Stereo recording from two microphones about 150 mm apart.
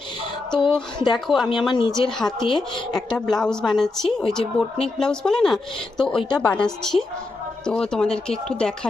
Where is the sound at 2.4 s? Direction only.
30° left (ahead or behind).